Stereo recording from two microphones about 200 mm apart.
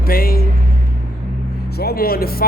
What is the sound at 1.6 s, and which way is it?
Speech, 50° left (ahead or behind).